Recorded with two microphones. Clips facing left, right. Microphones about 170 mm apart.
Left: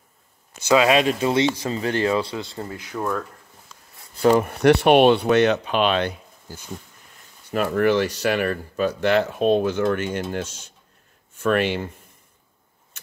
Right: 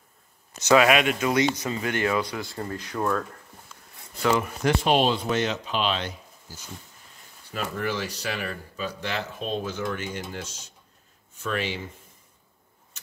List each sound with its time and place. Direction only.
0.7 s speech: 30° left (ahead or behind); by 3.0 s 15° left (ahead or behind)
4.4 s speech: 65° left (ahead or behind)